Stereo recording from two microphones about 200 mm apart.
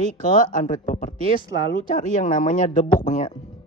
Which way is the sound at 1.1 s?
20° right (ahead or behind).